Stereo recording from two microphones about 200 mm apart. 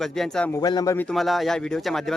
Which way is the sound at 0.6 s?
20° left (ahead or behind).